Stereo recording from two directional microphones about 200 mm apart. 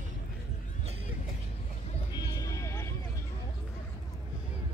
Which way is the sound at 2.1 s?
20° left (ahead or behind).